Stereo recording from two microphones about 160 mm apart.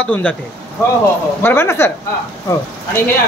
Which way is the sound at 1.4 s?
15° left (ahead or behind).